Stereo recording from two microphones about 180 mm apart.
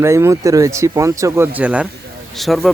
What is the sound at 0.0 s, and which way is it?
Speech, 15° right (ahead or behind).